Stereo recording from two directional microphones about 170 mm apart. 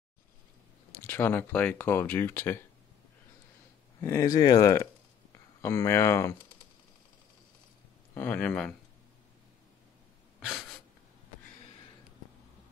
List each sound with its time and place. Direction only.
1.0 s speech: 10° left (ahead or behind)
4.0 s speech: 20° left (ahead or behind)
8.1 s speech: 10° left (ahead or behind)
10.4 s a sound: centre (ahead or behind)